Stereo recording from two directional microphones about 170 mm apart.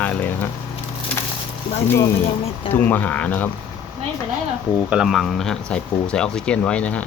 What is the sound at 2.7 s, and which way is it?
Speech, 10° left (ahead or behind).